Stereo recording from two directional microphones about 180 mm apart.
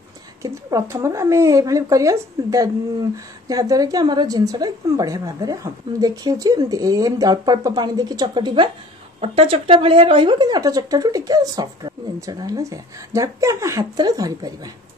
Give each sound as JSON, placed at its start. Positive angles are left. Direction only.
{"t": 0.4, "sound": "speech", "side_deg": -15}